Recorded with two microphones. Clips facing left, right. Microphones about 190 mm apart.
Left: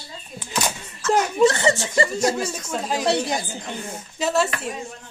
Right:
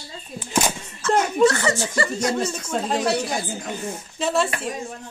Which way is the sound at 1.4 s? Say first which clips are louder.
Left 1 dB; 25° left (ahead or behind).